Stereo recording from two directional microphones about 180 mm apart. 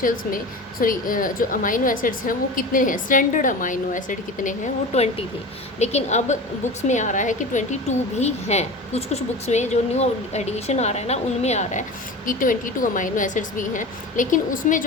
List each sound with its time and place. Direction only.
0.0 s a woman's voice: 50° left (ahead or behind)